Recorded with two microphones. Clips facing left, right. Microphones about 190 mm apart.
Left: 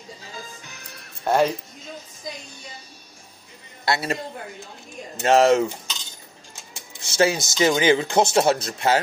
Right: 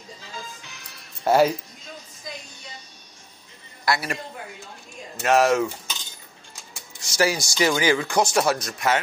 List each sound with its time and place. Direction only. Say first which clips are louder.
0.4 s music: even; 45° left (ahead or behind)
1.2 s speech: right 2 dB; 5° right (ahead or behind)
3.8 s speech: left 1 dB; 25° left (ahead or behind)
5.2 s speech: left 3 dB; 30° left (ahead or behind)
7.0 s speech: left 2 dB; 25° left (ahead or behind)